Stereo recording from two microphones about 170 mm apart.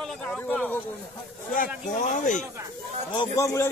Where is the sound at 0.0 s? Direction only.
5° left (ahead or behind).